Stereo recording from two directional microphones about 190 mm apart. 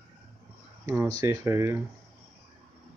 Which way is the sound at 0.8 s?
15° right (ahead or behind).